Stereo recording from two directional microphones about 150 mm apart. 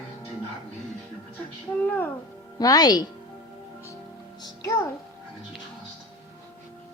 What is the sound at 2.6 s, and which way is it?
Speech, 25° left (ahead or behind).